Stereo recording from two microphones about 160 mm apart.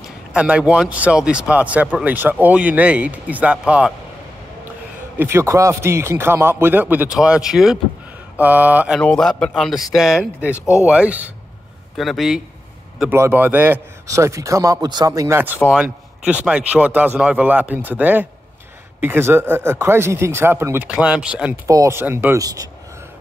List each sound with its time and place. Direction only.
0.3 s speech: 5° right (ahead or behind)
5.2 s speech: 15° right (ahead or behind)
9.0 s a man's voice: 5° left (ahead or behind)
13.1 s a man's voice: 15° right (ahead or behind)
21.6 s a man's voice: 20° right (ahead or behind)